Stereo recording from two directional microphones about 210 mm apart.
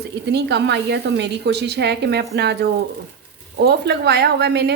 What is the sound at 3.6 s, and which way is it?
A woman's voice, 50° right (ahead or behind).